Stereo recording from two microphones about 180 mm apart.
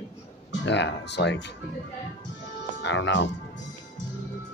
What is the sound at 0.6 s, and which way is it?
Speech, 75° left (ahead or behind).